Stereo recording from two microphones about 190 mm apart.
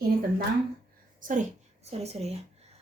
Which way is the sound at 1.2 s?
40° right (ahead or behind).